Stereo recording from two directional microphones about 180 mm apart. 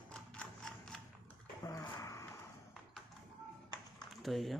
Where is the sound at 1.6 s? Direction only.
20° left (ahead or behind).